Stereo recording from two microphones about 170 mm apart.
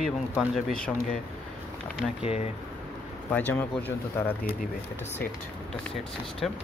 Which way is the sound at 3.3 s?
10° left (ahead or behind).